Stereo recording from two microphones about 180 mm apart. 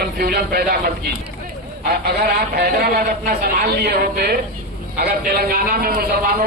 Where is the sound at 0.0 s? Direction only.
55° right (ahead or behind).